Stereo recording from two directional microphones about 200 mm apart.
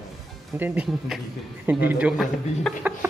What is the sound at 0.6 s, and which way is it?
A man's voice, 10° right (ahead or behind).